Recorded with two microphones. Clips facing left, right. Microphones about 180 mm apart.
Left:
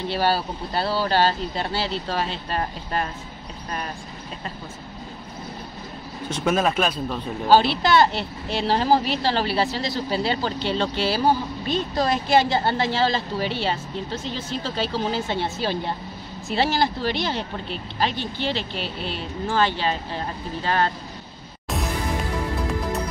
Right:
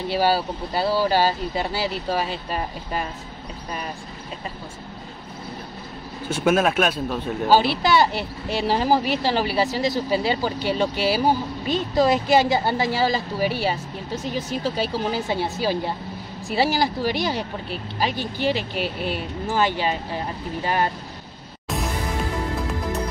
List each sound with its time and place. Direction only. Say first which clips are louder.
0.1 s speech: right 3 dB; 10° right (ahead or behind)
6.2 s speech: right 2 dB; 5° right (ahead or behind)